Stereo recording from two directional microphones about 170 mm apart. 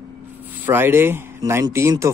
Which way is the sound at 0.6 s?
15° right (ahead or behind).